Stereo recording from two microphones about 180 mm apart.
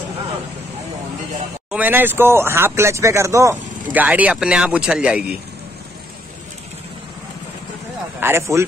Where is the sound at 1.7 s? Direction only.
10° right (ahead or behind).